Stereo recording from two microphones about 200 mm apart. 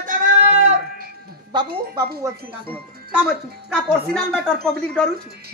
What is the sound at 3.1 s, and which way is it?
Speech, 5° right (ahead or behind).